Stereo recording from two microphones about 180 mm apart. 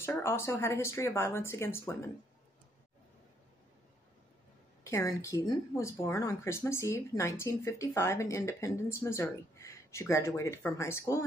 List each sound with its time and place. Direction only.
0.0 s speech: 15° left (ahead or behind)
4.8 s speech: 15° left (ahead or behind)